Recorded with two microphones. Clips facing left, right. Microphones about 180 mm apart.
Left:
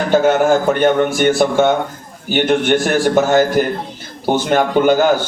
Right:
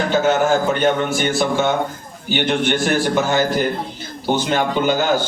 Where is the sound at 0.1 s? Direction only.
50° left (ahead or behind).